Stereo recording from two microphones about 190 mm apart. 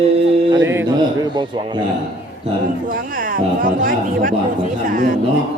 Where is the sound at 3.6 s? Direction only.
45° right (ahead or behind).